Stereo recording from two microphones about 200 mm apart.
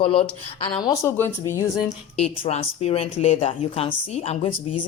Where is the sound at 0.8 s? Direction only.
15° left (ahead or behind).